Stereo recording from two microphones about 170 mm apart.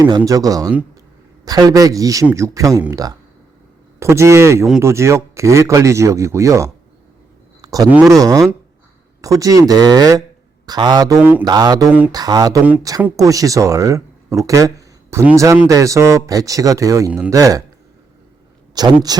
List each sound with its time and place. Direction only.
0.2 s speech: 20° right (ahead or behind)
7.6 s a sound: 20° right (ahead or behind)
8.0 s speech: 20° right (ahead or behind)
18.7 s speech: 25° right (ahead or behind)